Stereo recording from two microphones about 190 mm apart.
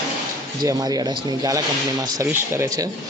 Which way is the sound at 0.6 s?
20° right (ahead or behind).